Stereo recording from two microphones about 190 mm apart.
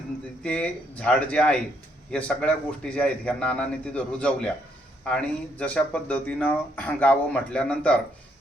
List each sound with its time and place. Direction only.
0.4 s a man's voice: 5° left (ahead or behind)